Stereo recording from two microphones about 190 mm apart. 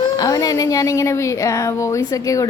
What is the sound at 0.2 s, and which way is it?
A woman's voice, 20° left (ahead or behind).